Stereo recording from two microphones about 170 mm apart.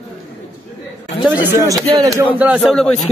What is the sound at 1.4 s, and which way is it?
Speech, 20° right (ahead or behind).